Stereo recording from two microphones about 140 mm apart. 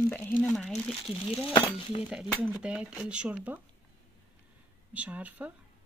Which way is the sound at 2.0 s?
10° right (ahead or behind).